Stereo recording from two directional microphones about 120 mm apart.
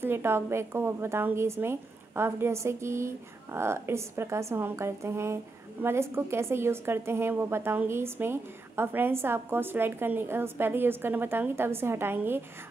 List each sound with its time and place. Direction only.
0.0 s a woman's voice: 20° right (ahead or behind)